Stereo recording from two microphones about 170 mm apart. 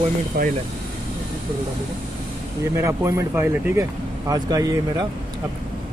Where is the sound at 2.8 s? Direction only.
15° right (ahead or behind).